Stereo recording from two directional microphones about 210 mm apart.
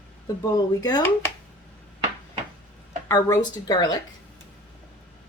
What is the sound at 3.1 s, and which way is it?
Speech, 15° left (ahead or behind).